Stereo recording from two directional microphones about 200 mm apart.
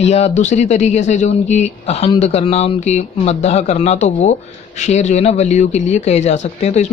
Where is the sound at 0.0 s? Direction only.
35° left (ahead or behind).